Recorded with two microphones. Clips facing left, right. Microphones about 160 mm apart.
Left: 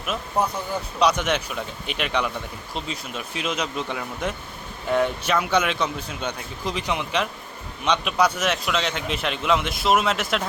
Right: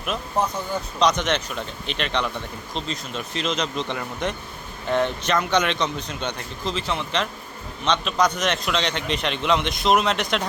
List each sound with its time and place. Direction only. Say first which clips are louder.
0.0 s a man's voice: even; 5° left (ahead or behind)